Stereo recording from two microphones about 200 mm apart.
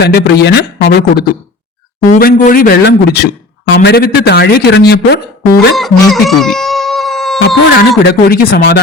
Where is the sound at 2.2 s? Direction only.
45° left (ahead or behind).